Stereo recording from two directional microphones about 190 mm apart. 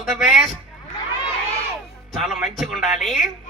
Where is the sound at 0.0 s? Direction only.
Centre (ahead or behind).